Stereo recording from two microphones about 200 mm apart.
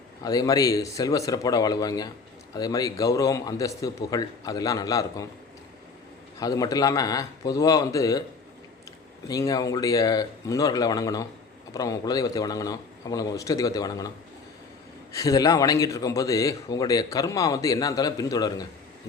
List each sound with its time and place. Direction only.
0.2 s a man's voice: 20° left (ahead or behind)
6.4 s a man's voice: 20° left (ahead or behind)
9.2 s a man's voice: 15° left (ahead or behind)
15.1 s a man's voice: 15° left (ahead or behind)